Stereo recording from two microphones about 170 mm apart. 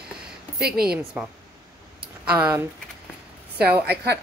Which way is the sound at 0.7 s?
65° right (ahead or behind).